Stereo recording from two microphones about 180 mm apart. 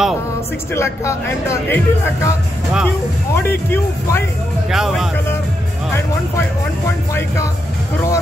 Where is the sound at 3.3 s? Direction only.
10° left (ahead or behind).